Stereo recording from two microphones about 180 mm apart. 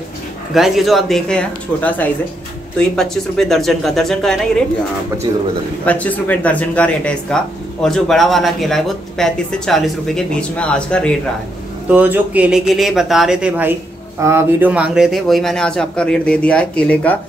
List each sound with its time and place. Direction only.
0.6 s speech: centre (ahead or behind)
5.9 s speech: 10° left (ahead or behind)
11.9 s speech: 10° right (ahead or behind); by 17.2 s 5° left (ahead or behind)